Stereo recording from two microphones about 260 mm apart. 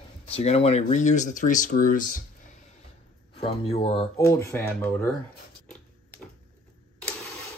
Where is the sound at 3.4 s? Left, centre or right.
Left.